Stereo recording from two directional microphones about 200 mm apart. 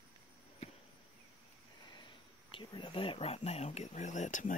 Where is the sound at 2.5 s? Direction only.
25° left (ahead or behind).